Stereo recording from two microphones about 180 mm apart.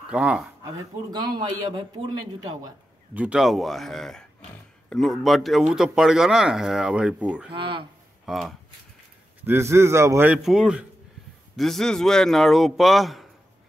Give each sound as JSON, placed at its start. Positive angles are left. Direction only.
{"t": 0.0, "sound": "speech", "side_deg": -5}
{"t": 1.1, "sound": "a man's voice", "side_deg": -25}
{"t": 3.2, "sound": "speech", "side_deg": -5}
{"t": 7.5, "sound": "a man's voice", "side_deg": -30}
{"t": 8.3, "sound": "speech", "side_deg": 0}
{"t": 9.4, "sound": "a man's voice", "side_deg": -15}